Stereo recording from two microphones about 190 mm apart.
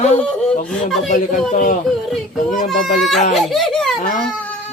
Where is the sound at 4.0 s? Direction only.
45° left (ahead or behind).